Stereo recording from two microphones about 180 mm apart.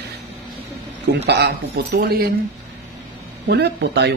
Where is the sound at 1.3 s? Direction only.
65° right (ahead or behind).